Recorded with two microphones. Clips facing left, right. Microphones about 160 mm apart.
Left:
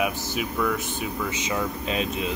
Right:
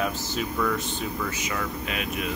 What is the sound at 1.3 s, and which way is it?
Speech, 20° left (ahead or behind).